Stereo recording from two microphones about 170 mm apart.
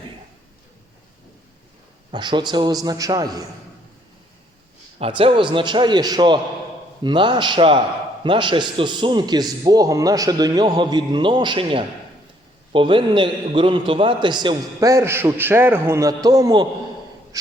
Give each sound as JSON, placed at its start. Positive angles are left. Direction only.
{"t": 2.1, "sound": "a man's voice", "side_deg": -25}
{"t": 4.9, "sound": "a man's voice", "side_deg": -35}